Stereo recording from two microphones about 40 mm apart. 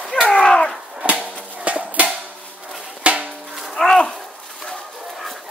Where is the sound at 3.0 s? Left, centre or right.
Right.